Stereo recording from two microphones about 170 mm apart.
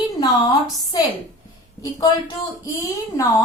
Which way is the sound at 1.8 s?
20° left (ahead or behind).